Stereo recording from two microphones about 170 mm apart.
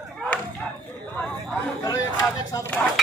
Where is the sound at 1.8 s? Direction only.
20° left (ahead or behind).